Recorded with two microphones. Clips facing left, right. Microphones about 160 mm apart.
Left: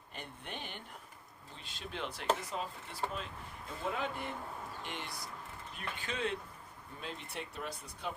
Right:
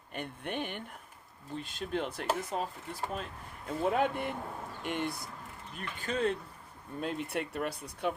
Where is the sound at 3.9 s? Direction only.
60° right (ahead or behind).